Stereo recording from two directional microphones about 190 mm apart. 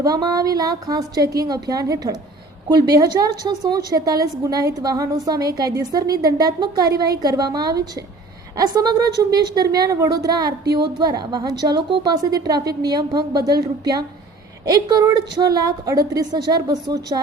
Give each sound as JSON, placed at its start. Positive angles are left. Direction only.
{"t": 0.0, "sound": "a woman's voice", "side_deg": -20}